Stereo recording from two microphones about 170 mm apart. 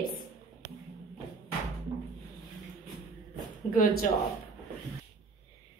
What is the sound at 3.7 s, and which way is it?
Speech, 55° left (ahead or behind).